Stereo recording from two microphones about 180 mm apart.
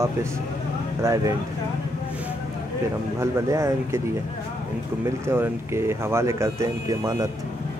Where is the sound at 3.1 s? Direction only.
15° right (ahead or behind).